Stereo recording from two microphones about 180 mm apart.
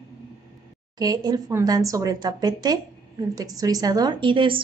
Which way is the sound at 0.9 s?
20° right (ahead or behind).